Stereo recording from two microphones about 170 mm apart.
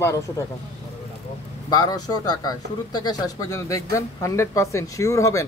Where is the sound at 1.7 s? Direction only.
25° left (ahead or behind).